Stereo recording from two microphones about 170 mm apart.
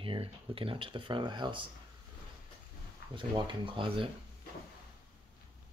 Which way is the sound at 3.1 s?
30° right (ahead or behind).